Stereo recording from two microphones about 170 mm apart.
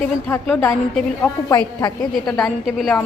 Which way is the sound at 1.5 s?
20° left (ahead or behind).